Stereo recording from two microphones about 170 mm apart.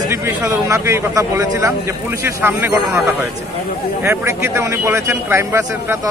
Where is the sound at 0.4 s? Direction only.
20° right (ahead or behind).